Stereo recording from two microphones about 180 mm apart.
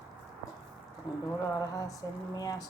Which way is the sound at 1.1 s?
25° left (ahead or behind).